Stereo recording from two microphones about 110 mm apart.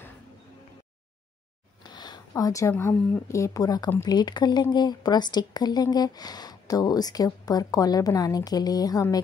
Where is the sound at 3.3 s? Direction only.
30° left (ahead or behind).